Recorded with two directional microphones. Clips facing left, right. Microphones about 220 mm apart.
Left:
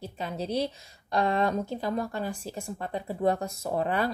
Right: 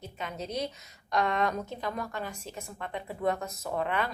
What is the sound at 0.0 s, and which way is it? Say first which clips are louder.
A woman's voice: left 4 dB; 30° left (ahead or behind).